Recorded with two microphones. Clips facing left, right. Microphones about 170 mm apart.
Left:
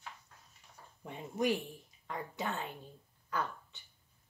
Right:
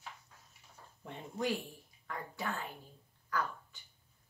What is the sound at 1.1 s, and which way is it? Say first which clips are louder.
A woman's voice: left 3 dB; 15° left (ahead or behind).